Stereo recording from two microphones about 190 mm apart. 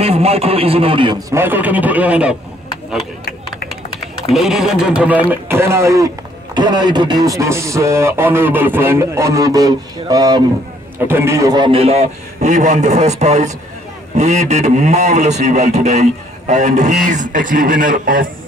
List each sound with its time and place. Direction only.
0.0 s a man's voice: 30° right (ahead or behind)
1.3 s speech: 10° right (ahead or behind)
4.3 s a man's voice: centre (ahead or behind); by 18.3 s 45° right (ahead or behind)